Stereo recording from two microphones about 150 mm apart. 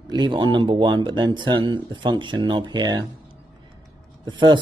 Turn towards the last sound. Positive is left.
turn(degrees=-30)  # may be behind; listen again after turning